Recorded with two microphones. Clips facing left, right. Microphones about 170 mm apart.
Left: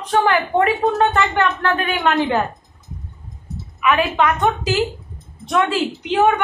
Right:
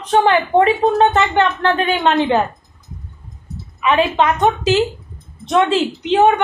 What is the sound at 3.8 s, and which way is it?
A woman's voice, 25° right (ahead or behind).